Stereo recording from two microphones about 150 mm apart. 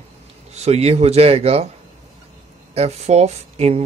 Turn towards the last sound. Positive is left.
turn(degrees=-45)  # may be behind; listen again after turning